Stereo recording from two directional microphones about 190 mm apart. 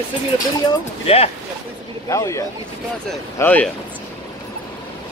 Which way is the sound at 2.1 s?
15° left (ahead or behind).